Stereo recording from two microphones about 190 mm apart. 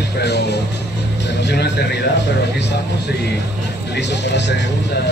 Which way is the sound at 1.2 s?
65° left (ahead or behind).